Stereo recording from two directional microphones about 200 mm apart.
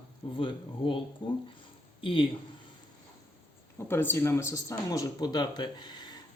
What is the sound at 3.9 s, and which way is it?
Speech, 10° left (ahead or behind).